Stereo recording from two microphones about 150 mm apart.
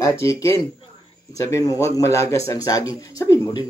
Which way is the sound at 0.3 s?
20° left (ahead or behind).